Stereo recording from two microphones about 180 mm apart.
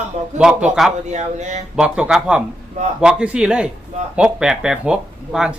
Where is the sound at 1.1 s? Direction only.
40° right (ahead or behind).